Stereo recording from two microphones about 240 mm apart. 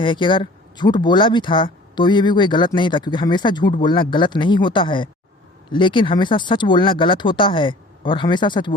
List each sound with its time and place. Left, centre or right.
0.0 s speech: centre